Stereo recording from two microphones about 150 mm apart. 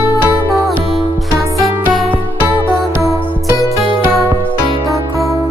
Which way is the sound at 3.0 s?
20° right (ahead or behind).